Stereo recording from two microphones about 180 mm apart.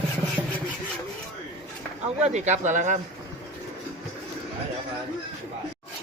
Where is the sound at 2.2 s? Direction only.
40° right (ahead or behind).